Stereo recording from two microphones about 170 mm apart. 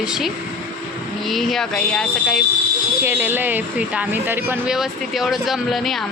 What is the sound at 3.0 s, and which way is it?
Speech, 10° right (ahead or behind).